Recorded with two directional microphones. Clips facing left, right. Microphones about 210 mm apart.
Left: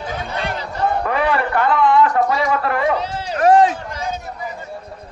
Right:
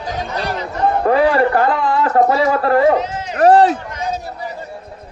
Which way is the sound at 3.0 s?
35° left (ahead or behind).